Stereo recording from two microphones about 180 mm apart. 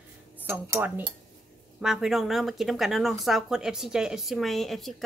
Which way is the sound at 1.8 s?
Centre (ahead or behind).